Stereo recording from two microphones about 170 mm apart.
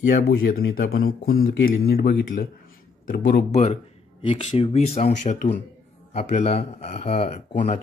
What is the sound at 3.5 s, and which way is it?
Speech, 40° left (ahead or behind).